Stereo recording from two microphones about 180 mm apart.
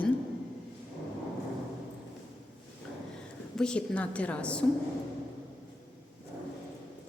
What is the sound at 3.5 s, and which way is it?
A woman's voice, 5° left (ahead or behind).